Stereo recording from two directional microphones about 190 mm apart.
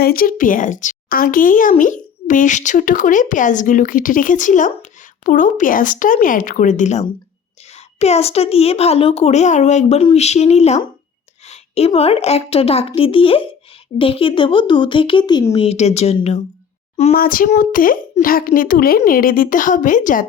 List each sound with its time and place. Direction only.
0.0 s a woman's voice: 50° left (ahead or behind); by 16.4 s 35° left (ahead or behind)
17.2 s a woman's voice: 50° left (ahead or behind)